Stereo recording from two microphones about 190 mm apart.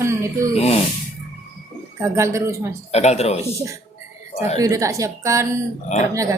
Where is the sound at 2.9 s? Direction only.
35° left (ahead or behind).